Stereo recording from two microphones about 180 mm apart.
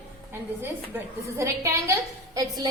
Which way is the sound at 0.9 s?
15° right (ahead or behind).